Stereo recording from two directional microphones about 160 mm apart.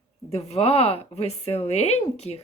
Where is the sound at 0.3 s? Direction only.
40° left (ahead or behind).